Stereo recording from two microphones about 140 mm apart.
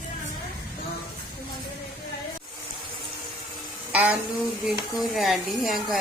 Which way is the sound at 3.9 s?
10° right (ahead or behind).